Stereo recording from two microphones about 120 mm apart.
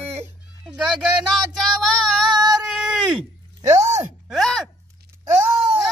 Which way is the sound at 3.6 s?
25° right (ahead or behind).